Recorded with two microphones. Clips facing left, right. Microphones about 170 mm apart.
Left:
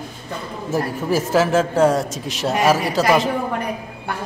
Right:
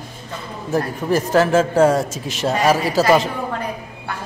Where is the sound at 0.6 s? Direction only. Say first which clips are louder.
Right 1 dB; 5° left (ahead or behind).